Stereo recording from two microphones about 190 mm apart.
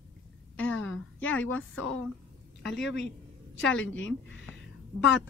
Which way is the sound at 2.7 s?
Centre (ahead or behind).